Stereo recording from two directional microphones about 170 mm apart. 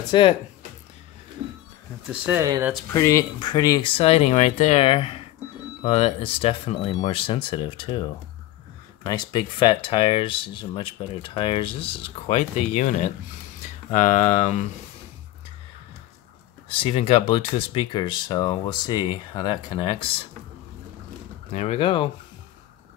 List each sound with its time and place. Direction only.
0.1 s speech: 30° left (ahead or behind)
2.3 s speech: 20° right (ahead or behind)
2.9 s speech: 20° left (ahead or behind)
3.9 s speech: 35° left (ahead or behind)
9.0 s speech: 25° left (ahead or behind); by 14.7 s 45° left (ahead or behind)
16.6 s speech: 30° left (ahead or behind)
21.5 s speech: 40° left (ahead or behind)